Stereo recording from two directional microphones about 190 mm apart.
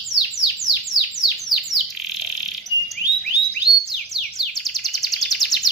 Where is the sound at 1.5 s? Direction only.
25° right (ahead or behind).